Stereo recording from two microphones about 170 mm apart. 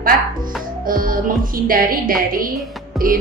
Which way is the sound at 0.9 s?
55° right (ahead or behind).